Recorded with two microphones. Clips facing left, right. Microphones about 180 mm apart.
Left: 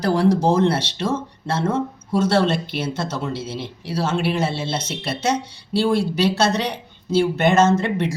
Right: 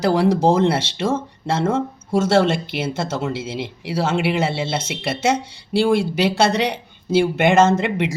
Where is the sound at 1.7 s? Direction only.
50° right (ahead or behind).